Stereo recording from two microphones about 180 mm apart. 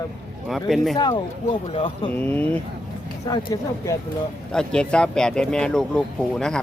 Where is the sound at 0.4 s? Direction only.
Centre (ahead or behind).